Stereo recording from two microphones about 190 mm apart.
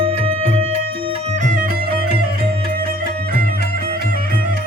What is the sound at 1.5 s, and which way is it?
Music, 45° right (ahead or behind).